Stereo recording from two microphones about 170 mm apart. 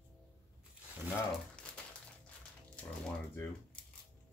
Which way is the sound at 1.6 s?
5° left (ahead or behind).